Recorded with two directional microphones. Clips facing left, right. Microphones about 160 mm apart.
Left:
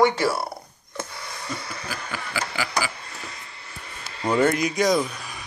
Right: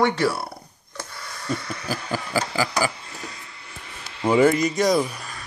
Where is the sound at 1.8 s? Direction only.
35° right (ahead or behind).